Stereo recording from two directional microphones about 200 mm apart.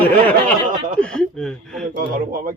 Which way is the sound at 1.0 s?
5° left (ahead or behind).